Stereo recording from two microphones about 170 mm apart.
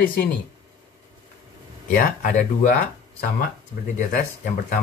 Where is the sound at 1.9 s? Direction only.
55° left (ahead or behind).